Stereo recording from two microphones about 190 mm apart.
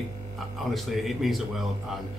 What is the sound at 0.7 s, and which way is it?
Speech, centre (ahead or behind).